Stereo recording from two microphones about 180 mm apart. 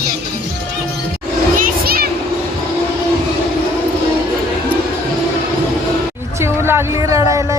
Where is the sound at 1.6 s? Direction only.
55° right (ahead or behind).